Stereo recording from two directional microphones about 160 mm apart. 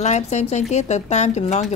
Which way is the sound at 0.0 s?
45° left (ahead or behind).